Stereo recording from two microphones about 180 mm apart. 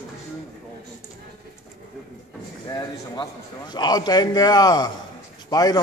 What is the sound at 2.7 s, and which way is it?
A man's voice, 25° left (ahead or behind).